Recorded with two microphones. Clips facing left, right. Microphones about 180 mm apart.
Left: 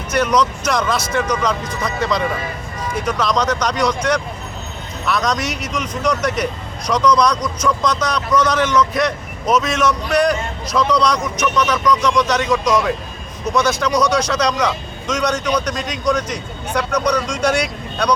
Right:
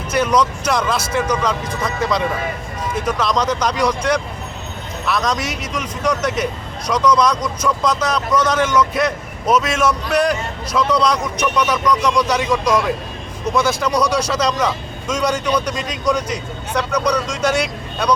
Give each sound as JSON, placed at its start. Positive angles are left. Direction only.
{"t": 0.2, "sound": "a man's voice", "side_deg": -5}